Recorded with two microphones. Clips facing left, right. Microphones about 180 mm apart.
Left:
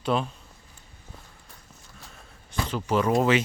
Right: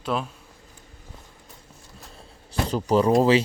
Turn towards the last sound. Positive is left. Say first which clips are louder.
# right 4 dB
turn(degrees=-35)  # may be behind; listen again after turning